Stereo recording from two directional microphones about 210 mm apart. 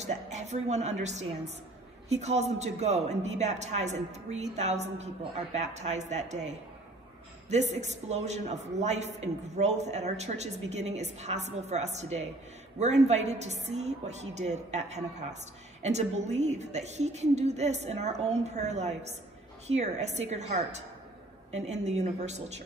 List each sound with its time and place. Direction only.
0.0 s a man's voice: 35° right (ahead or behind)